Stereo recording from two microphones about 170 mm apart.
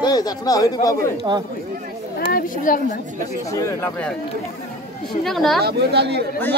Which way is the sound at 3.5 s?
20° left (ahead or behind).